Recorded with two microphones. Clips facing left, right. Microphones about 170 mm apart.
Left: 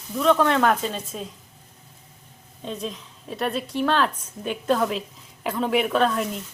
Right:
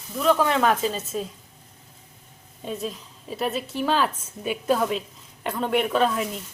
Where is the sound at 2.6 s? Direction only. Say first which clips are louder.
Right 1 dB; 5° right (ahead or behind).